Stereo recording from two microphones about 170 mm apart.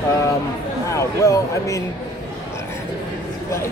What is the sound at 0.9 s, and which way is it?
Speech, 20° left (ahead or behind).